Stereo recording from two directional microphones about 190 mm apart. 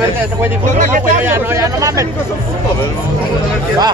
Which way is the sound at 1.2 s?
15° right (ahead or behind).